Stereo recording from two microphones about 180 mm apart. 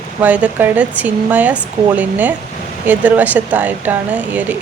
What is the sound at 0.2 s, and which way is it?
Speech, 10° right (ahead or behind).